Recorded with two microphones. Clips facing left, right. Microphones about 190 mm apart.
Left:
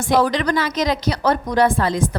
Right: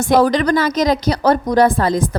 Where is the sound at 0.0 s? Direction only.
40° right (ahead or behind).